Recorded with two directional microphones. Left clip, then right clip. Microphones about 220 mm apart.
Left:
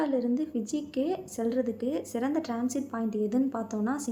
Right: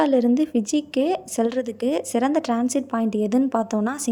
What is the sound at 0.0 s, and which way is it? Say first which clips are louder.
A woman's voice: right 10 dB; 40° right (ahead or behind).